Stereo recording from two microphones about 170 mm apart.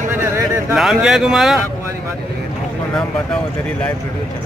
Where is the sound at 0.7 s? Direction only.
5° right (ahead or behind).